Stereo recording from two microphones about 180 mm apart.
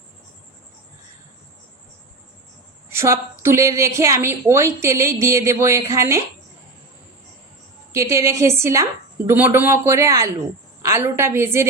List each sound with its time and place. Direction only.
2.9 s a woman's voice: 15° right (ahead or behind)
7.9 s a woman's voice: 15° right (ahead or behind)